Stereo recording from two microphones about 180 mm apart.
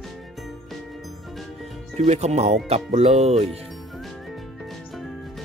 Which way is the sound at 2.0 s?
40° right (ahead or behind).